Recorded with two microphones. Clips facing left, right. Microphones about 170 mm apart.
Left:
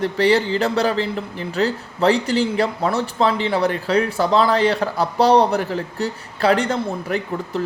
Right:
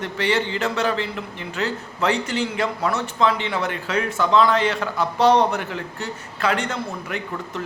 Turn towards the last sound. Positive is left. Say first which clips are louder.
# left 6 dB
turn(degrees=35)  # may be behind; listen again after turning